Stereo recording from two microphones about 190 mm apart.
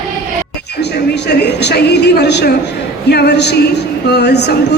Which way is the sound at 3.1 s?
60° left (ahead or behind).